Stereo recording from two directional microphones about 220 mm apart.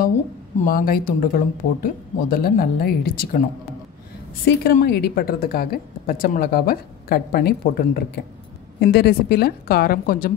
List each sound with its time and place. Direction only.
0.7 s speech: 40° left (ahead or behind)
4.6 s a woman's voice: 45° left (ahead or behind)